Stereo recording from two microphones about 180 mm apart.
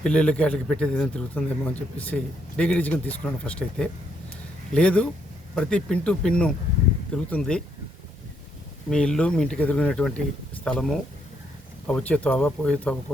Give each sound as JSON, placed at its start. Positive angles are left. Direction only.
{"t": 0.0, "sound": "speech", "side_deg": 5}
{"t": 8.9, "sound": "speech", "side_deg": 5}